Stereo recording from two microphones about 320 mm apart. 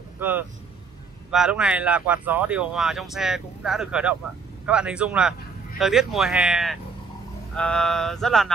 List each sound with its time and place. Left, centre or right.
0.2 s speech: centre